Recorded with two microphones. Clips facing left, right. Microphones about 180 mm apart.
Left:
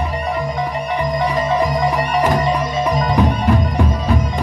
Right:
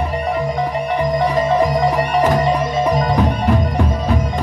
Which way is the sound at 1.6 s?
55° right (ahead or behind).